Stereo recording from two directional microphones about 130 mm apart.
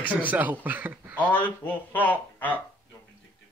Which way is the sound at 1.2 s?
10° left (ahead or behind).